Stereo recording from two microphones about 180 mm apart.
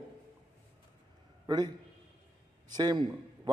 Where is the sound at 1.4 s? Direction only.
20° right (ahead or behind).